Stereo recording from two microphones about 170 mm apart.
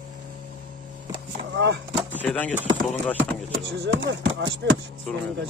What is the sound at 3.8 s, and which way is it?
Speech, 90° right.